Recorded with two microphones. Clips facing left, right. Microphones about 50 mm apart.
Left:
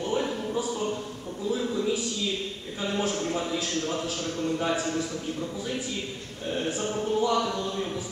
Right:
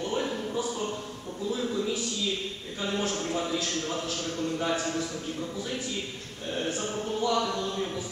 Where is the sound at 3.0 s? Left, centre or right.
Centre.